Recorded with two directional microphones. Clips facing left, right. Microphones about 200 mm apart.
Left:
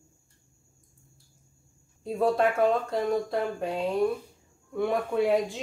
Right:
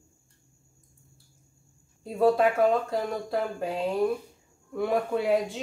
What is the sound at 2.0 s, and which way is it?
Speech, centre (ahead or behind).